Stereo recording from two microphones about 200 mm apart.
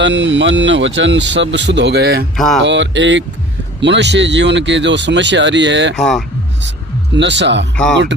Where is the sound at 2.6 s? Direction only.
65° right (ahead or behind).